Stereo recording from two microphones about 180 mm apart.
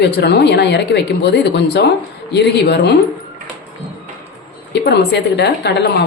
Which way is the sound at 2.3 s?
70° left (ahead or behind).